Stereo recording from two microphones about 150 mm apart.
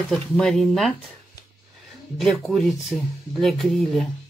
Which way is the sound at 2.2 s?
Centre (ahead or behind).